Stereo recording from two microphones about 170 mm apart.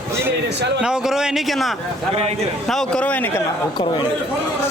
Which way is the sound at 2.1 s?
40° right (ahead or behind).